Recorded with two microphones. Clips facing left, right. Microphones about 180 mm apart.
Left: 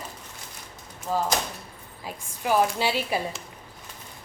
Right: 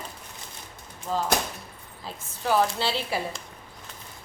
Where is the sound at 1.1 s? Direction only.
10° left (ahead or behind).